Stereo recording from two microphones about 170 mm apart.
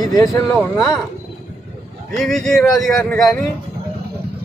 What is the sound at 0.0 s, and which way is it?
Speech, 20° left (ahead or behind).